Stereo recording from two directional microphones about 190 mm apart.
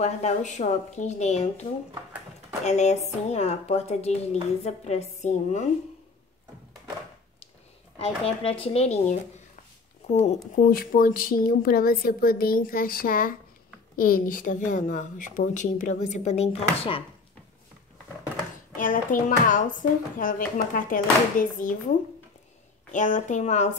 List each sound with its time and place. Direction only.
0.0 s a woman's voice: 35° left (ahead or behind)
8.0 s a woman's voice: 30° left (ahead or behind)
10.6 s a woman's voice: 50° left (ahead or behind); by 17.0 s 30° left (ahead or behind)
18.8 s a woman's voice: 45° left (ahead or behind)